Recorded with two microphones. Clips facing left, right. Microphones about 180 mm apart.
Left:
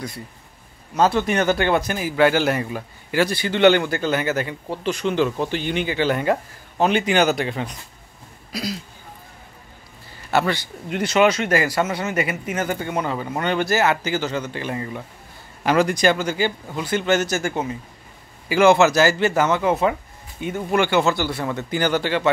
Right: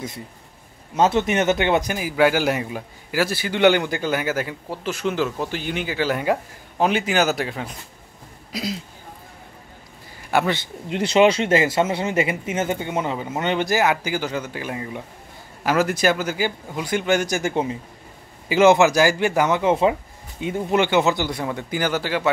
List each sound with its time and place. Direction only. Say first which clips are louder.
0.9 s speech: even; 20° right (ahead or behind); by 7.7 s 5° right (ahead or behind)
8.5 s speech: even; 20° right (ahead or behind)
10.3 s speech: even; 20° right (ahead or behind)
19.7 s speech: right 2 dB; 25° right (ahead or behind); by 22.3 s 5° right (ahead or behind)